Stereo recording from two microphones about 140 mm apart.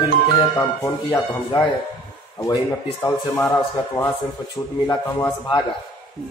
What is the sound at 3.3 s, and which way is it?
Speech, 20° left (ahead or behind).